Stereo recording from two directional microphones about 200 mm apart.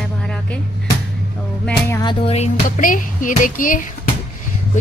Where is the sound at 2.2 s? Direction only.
35° left (ahead or behind).